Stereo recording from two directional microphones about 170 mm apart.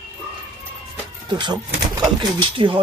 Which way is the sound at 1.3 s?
25° right (ahead or behind).